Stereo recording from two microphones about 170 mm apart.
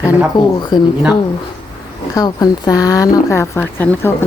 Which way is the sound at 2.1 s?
20° left (ahead or behind).